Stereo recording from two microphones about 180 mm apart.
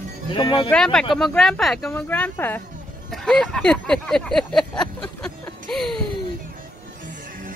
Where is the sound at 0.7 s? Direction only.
5° left (ahead or behind).